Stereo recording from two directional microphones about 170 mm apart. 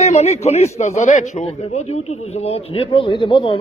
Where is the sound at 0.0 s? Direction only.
40° left (ahead or behind).